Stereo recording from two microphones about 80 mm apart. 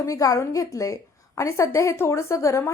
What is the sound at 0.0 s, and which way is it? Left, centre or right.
A woman's voice, left.